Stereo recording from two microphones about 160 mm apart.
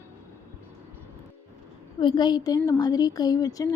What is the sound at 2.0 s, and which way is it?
A woman's voice, 30° left (ahead or behind).